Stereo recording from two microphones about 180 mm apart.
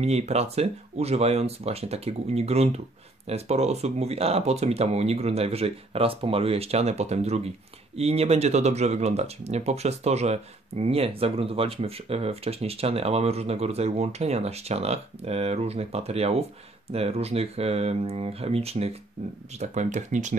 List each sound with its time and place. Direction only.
0.0 s speech: 35° right (ahead or behind)